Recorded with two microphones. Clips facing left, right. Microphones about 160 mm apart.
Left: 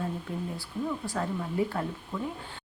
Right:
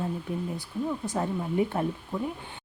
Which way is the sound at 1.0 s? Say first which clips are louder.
Right 3 dB; 20° right (ahead or behind).